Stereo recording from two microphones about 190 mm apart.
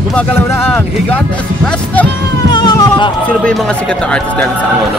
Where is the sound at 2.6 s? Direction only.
25° left (ahead or behind).